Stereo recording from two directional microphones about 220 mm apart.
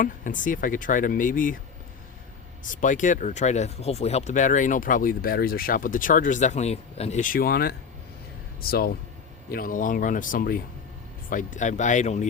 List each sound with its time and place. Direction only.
0.0 s speech: 35° left (ahead or behind)
2.6 s speech: 35° left (ahead or behind)